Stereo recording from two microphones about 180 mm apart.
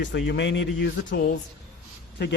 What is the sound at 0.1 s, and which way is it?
Speech, 75° left (ahead or behind).